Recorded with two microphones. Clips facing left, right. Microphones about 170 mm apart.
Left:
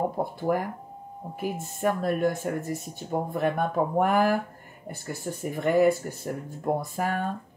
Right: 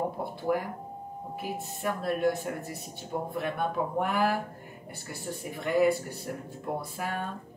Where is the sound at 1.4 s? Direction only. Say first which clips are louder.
Left 7 dB; 45° left (ahead or behind).